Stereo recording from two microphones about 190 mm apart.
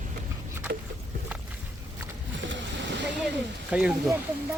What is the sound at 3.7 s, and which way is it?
Speech, 5° right (ahead or behind).